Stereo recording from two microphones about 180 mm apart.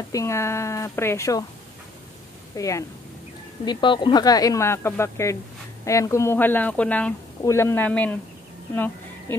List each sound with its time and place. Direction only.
0.1 s speech: 15° left (ahead or behind)
2.5 s a woman's voice: 20° left (ahead or behind)